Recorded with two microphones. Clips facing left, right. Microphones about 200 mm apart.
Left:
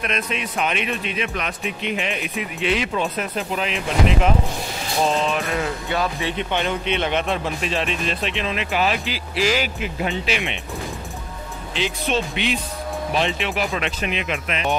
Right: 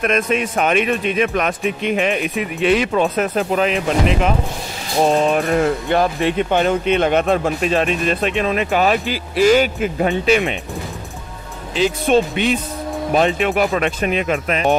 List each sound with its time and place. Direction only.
0.0 s speech: 50° right (ahead or behind)
5.0 s speech: 50° right (ahead or behind)
11.7 s speech: 45° right (ahead or behind)